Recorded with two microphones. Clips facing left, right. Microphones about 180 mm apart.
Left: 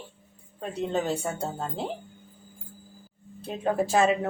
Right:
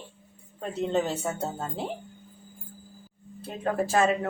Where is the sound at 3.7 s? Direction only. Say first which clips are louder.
Left 1 dB; 15° left (ahead or behind).